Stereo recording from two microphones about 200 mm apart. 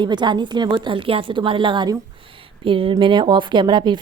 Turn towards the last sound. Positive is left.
turn(degrees=-20)  # may be behind; listen again after turning